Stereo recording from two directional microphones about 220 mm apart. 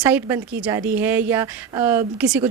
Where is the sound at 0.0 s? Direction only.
10° right (ahead or behind).